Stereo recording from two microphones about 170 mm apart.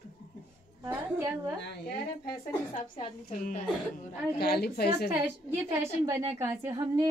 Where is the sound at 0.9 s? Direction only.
10° right (ahead or behind).